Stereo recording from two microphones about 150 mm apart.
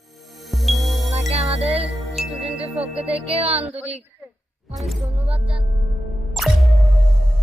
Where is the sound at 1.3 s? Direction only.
40° right (ahead or behind).